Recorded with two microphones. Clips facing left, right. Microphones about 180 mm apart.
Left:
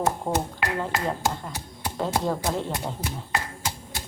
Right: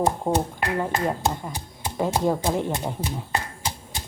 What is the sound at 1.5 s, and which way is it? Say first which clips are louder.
Speech: right 1 dB; 15° right (ahead or behind).